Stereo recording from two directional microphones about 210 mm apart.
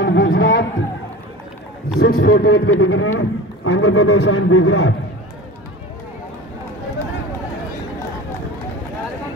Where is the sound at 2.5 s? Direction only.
70° left (ahead or behind).